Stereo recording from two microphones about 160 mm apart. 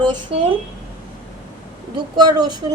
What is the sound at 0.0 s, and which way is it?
Speech, 30° right (ahead or behind).